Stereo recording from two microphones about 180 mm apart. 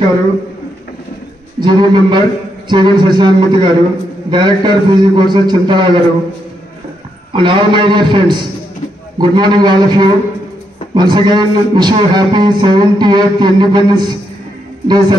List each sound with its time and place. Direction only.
1.6 s a man's voice: 25° right (ahead or behind)
7.3 s a man's voice: 25° right (ahead or behind)